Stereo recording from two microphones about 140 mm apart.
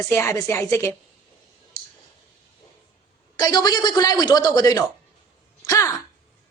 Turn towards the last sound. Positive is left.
turn(degrees=25)  # may be behind; listen again after turning